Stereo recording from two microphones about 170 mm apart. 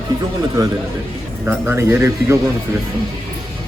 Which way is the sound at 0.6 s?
20° right (ahead or behind).